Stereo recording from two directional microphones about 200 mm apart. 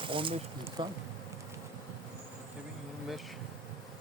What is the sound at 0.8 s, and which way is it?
Speech, 25° right (ahead or behind).